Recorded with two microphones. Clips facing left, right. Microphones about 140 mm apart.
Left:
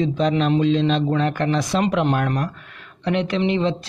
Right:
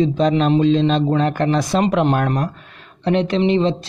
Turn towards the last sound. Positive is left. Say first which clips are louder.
# right 4 dB
turn(degrees=-30)  # may be behind; listen again after turning